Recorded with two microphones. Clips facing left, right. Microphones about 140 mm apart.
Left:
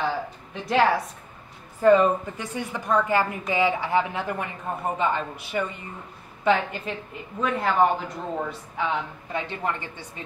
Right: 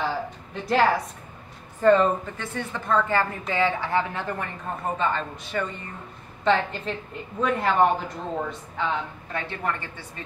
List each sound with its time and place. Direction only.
0.0 s a sound: centre (ahead or behind)
1.8 s a woman's voice: 10° left (ahead or behind)
9.3 s a woman's voice: 15° left (ahead or behind)